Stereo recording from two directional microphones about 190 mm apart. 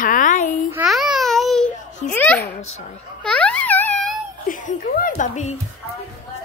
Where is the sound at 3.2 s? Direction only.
5° left (ahead or behind).